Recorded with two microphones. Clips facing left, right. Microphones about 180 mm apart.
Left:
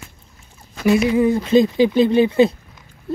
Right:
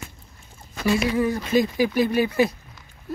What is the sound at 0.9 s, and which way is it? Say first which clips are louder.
Speech: left 6 dB; 20° left (ahead or behind).